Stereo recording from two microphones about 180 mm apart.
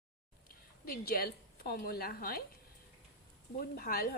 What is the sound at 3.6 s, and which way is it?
Speech, 55° left (ahead or behind).